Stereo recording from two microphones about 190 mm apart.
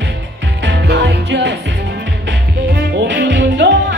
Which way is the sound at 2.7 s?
70° right (ahead or behind).